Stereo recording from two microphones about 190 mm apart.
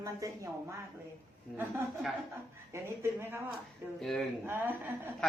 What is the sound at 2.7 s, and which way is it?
Speech, 15° right (ahead or behind).